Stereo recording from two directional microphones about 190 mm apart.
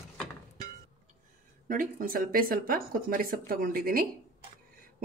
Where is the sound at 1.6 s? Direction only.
45° right (ahead or behind).